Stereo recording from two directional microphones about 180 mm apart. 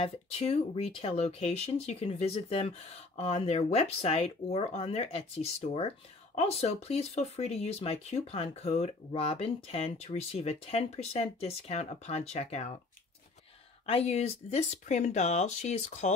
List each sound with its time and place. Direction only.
0.0 s speech: 35° left (ahead or behind)
13.8 s speech: 35° left (ahead or behind)